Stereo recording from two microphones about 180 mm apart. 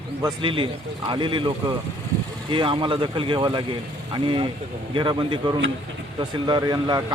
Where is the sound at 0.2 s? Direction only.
25° right (ahead or behind).